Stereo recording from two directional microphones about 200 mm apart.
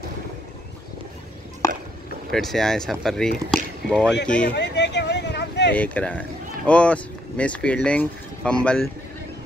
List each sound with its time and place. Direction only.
2.3 s speech: centre (ahead or behind)
4.5 s a sound: 60° left (ahead or behind)
5.8 s speech: 5° left (ahead or behind)